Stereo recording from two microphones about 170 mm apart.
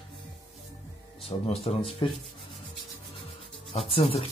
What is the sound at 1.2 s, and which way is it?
Speech, 35° left (ahead or behind).